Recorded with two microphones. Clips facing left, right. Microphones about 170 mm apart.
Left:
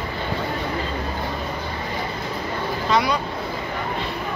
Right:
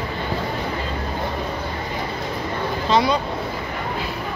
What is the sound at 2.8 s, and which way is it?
Speech, 25° right (ahead or behind).